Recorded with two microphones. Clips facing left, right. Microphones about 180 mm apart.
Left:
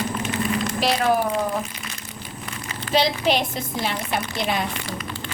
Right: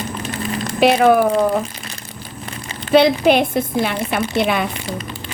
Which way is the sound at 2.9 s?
55° right (ahead or behind).